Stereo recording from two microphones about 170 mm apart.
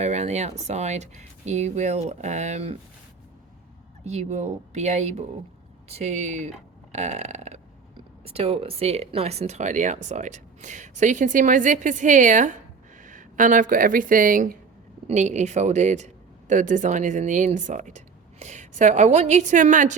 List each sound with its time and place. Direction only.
0.0 s speech: 40° right (ahead or behind)
4.0 s speech: 40° right (ahead or behind)
6.9 s burping: 40° right (ahead or behind)
8.2 s speech: 35° right (ahead or behind)